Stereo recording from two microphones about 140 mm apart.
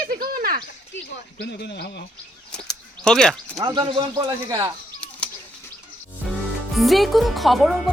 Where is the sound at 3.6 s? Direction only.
30° right (ahead or behind).